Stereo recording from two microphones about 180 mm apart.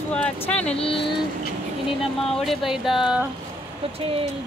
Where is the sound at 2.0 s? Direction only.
Centre (ahead or behind).